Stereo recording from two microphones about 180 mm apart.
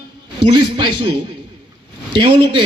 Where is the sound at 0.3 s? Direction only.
25° right (ahead or behind).